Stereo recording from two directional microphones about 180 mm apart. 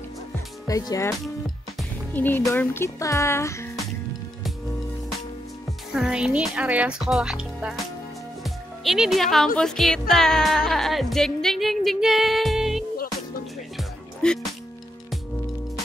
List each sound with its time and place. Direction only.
0.7 s speech: 20° left (ahead or behind)
2.1 s speech: 10° left (ahead or behind)
5.9 s speech: 5° right (ahead or behind)
8.5 s music: centre (ahead or behind)
9.6 s speech: centre (ahead or behind)
13.7 s music: centre (ahead or behind)